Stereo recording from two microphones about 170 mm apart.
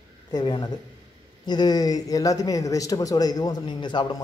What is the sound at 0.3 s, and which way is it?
Speech, 25° left (ahead or behind).